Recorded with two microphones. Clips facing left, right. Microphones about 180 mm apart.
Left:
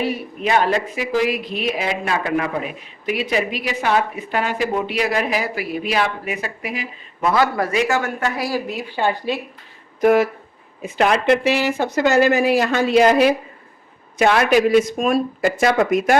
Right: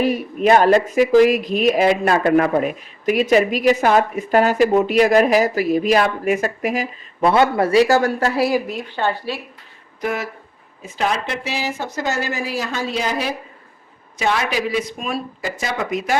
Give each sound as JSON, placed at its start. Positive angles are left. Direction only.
{"t": 0.0, "sound": "speech", "side_deg": -45}
{"t": 7.2, "sound": "speech", "side_deg": -30}
{"t": 8.6, "sound": "speech", "side_deg": 0}
{"t": 9.0, "sound": "speech", "side_deg": 15}
{"t": 10.0, "sound": "speech", "side_deg": 55}
{"t": 10.8, "sound": "speech", "side_deg": 65}